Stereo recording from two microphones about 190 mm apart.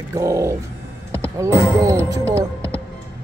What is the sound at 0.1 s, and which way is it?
Speech, 15° right (ahead or behind).